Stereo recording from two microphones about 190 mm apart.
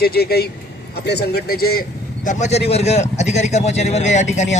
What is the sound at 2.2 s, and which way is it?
Speech, 40° left (ahead or behind).